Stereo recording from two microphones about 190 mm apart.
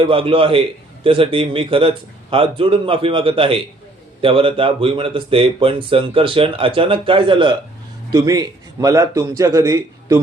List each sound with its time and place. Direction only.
0.1 s a man's voice: 30° right (ahead or behind)